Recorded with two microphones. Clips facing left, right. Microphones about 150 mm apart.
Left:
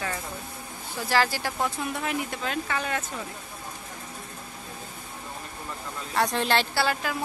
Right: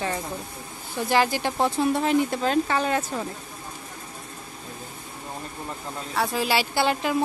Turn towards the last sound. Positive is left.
turn(degrees=-20)  # may be behind; listen again after turning